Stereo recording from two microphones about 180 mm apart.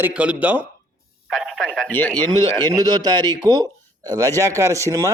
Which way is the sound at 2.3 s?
20° right (ahead or behind).